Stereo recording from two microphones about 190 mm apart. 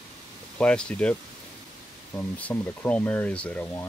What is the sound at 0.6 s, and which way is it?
Speech, 5° left (ahead or behind).